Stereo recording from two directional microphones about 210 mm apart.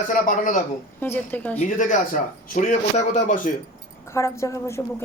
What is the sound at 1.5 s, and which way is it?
Speech, 40° left (ahead or behind).